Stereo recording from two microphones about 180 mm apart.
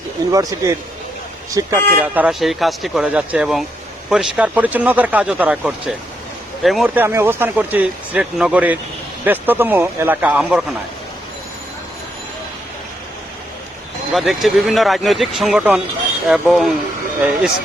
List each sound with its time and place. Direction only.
0.3 s speech: 15° right (ahead or behind)
14.1 s speech: centre (ahead or behind)